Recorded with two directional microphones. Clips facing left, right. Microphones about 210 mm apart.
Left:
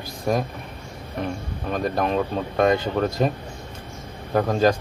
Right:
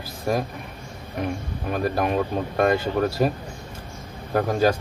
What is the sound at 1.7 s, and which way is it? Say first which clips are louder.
Speech: even; 5° right (ahead or behind).